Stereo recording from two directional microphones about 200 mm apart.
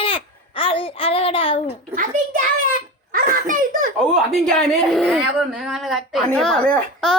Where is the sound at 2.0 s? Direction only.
40° right (ahead or behind).